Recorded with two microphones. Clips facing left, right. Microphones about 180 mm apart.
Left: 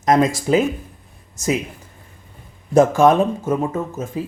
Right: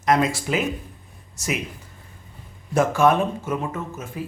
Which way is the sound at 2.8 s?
45° left (ahead or behind).